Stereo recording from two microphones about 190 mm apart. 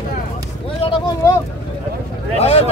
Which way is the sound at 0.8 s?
30° left (ahead or behind).